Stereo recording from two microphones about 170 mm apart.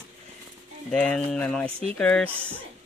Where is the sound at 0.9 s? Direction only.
5° left (ahead or behind).